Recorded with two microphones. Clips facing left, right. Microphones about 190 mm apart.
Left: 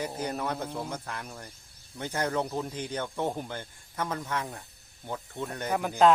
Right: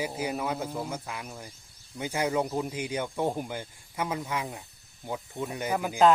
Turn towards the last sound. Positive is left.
turn(degrees=0)  # may be behind; listen again after turning